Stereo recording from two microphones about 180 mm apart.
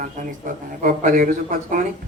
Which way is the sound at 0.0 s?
45° right (ahead or behind).